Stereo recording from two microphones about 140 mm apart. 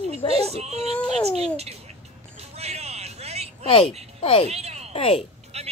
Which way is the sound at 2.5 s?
50° right (ahead or behind).